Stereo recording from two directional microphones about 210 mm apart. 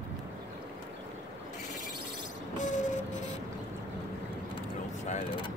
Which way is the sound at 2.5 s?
35° left (ahead or behind).